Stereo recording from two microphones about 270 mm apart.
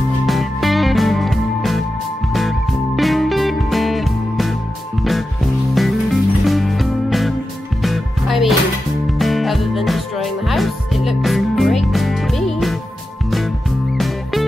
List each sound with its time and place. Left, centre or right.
0.3 s music: centre
3.0 s music: centre